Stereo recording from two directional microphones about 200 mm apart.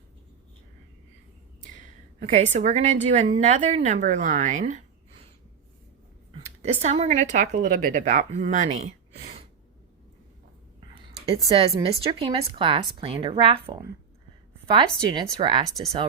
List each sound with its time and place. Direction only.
1.6 s a sound: 40° right (ahead or behind)
2.3 s a woman's voice: 35° right (ahead or behind)
6.4 s a woman's voice: 35° right (ahead or behind)
10.8 s a woman's voice: 30° right (ahead or behind)
15.1 s speech: 25° right (ahead or behind)